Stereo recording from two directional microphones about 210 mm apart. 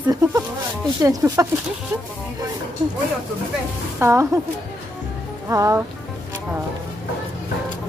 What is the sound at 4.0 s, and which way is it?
Speech, 10° right (ahead or behind).